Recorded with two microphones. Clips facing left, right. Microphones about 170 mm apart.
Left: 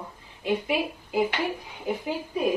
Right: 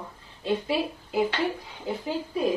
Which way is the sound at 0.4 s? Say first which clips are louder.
Even; 15° left (ahead or behind).